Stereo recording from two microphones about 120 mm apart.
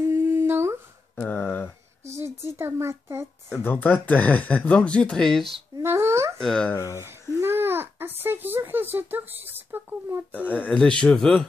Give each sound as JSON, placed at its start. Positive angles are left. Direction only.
{"t": 0.1, "sound": "humming", "side_deg": -15}
{"t": 1.1, "sound": "a sound", "side_deg": 15}
{"t": 2.5, "sound": "a child's voice", "side_deg": -20}
{"t": 3.6, "sound": "speech", "side_deg": 15}
{"t": 5.8, "sound": "a sound", "side_deg": -20}
{"t": 6.4, "sound": "speech", "side_deg": 5}
{"t": 6.7, "sound": "speech", "side_deg": 25}
{"t": 7.0, "sound": "babbling", "side_deg": -20}
{"t": 8.2, "sound": "speech", "side_deg": -20}
{"t": 10.3, "sound": "speech", "side_deg": 15}